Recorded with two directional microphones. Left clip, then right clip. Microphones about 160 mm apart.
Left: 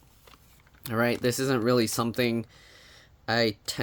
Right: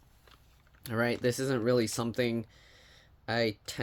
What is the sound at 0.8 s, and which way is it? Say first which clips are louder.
Speech: left 4 dB; 15° left (ahead or behind).